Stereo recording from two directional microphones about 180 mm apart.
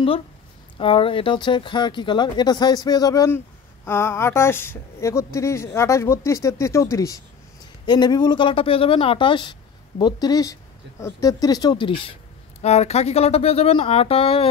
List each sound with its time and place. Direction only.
0.7 s speech: 30° left (ahead or behind)